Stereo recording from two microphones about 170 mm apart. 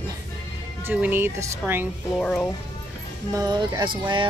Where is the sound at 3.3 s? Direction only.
20° right (ahead or behind).